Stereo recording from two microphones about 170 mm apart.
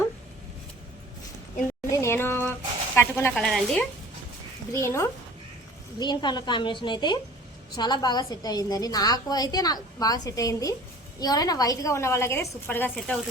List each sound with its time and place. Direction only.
1.9 s a sound: 15° left (ahead or behind)
3.3 s speech: 5° left (ahead or behind)
4.7 s a woman's voice: 15° left (ahead or behind)
6.0 s a woman's voice: 25° left (ahead or behind)